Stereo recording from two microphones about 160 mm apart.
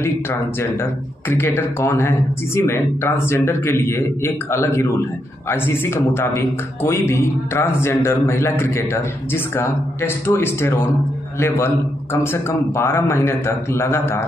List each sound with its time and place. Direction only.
0.0 s a man's voice: 15° left (ahead or behind)